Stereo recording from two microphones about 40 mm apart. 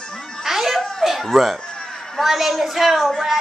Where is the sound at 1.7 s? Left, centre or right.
Centre.